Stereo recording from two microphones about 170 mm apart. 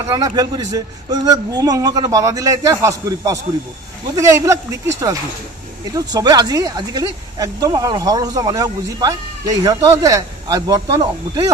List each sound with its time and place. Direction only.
0.0 s speech: 20° right (ahead or behind)